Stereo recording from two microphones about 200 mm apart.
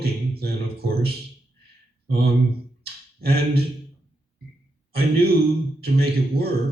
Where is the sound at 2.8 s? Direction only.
50° right (ahead or behind).